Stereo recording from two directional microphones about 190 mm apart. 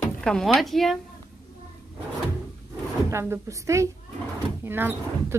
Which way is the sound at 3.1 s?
15° right (ahead or behind).